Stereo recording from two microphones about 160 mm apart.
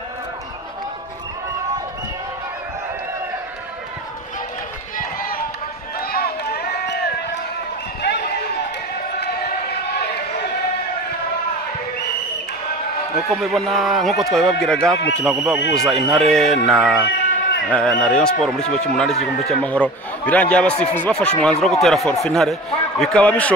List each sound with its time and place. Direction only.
4.9 s crowd: 65° left (ahead or behind)
5.9 s run: 75° left (ahead or behind)
13.3 s a man's voice: centre (ahead or behind)
17.1 s bleat: 90° left
17.6 s a man's voice: 5° left (ahead or behind)